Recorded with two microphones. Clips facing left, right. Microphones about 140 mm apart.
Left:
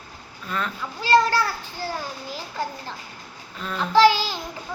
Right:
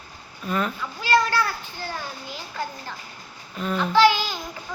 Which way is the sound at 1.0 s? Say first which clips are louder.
Left 2 dB; 35° left (ahead or behind).